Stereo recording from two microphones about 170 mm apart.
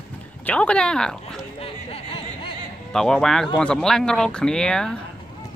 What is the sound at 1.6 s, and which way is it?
Music, 35° left (ahead or behind).